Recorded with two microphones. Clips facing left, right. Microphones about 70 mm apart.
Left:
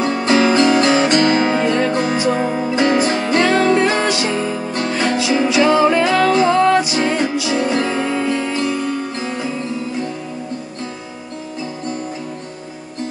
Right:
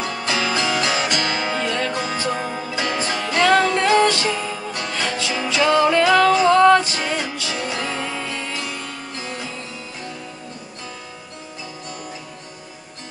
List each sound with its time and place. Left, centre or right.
0.0 s music: left
1.6 s music: left
1.9 s music: left
2.1 s music: left
4.3 s music: left
7.5 s music: left